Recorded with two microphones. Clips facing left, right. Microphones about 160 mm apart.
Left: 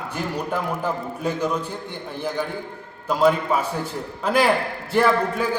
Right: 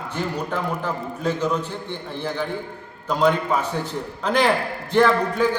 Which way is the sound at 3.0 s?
5° left (ahead or behind).